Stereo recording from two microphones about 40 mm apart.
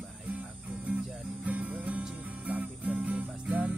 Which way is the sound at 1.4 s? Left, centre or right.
Right.